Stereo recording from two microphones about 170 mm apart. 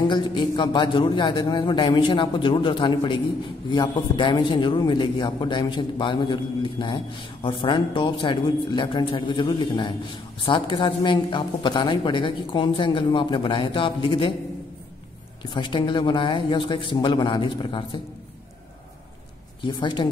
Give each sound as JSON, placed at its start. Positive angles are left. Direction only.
{"t": 0.1, "sound": "speech", "side_deg": 30}
{"t": 15.5, "sound": "speech", "side_deg": 30}
{"t": 19.6, "sound": "speech", "side_deg": 25}